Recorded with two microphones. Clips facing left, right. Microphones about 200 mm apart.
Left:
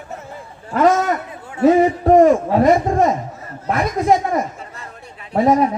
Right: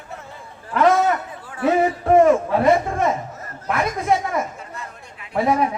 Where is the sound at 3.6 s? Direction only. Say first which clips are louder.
Left 4 dB; 35° left (ahead or behind).